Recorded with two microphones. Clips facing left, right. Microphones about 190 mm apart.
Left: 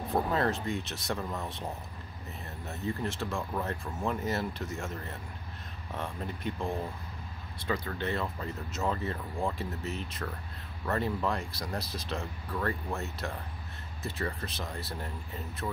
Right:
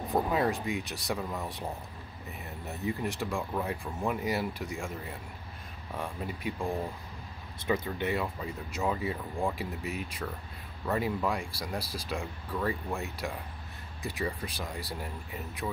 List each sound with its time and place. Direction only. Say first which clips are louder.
0.1 s speech: right 1 dB; 15° right (ahead or behind)
1.1 s speech: right 1 dB; centre (ahead or behind)
2.6 s speech: right 1 dB; 15° right (ahead or behind)